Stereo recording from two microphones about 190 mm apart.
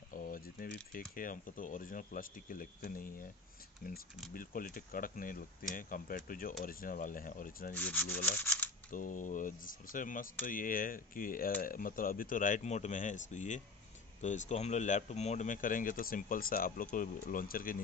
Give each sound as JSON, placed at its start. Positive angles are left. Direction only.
{"t": 0.1, "sound": "a sound", "side_deg": 45}
{"t": 1.1, "sound": "speech", "side_deg": 45}
{"t": 7.7, "sound": "rub", "side_deg": 5}
{"t": 8.9, "sound": "speech", "side_deg": 45}